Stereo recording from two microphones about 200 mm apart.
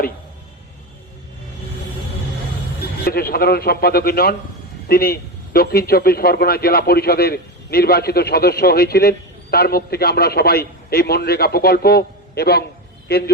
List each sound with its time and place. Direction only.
3.0 s a man's voice: 50° left (ahead or behind)